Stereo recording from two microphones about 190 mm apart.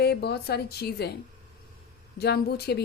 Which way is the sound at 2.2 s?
55° left (ahead or behind).